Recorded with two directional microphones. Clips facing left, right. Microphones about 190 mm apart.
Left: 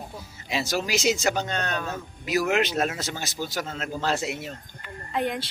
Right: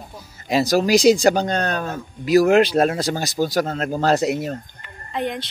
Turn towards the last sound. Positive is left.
turn(degrees=5)  # may be behind; listen again after turning